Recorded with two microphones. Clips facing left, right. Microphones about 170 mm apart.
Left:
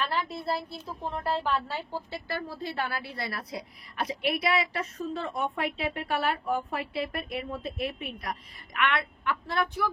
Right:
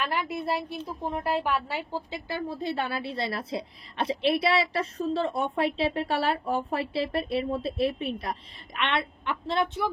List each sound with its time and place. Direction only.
0.0 s a woman's voice: 15° right (ahead or behind)